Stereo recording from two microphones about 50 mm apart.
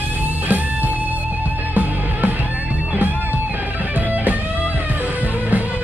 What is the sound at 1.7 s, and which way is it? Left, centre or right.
Music, right.